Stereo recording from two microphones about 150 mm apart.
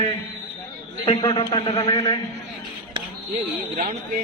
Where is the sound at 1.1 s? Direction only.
40° left (ahead or behind).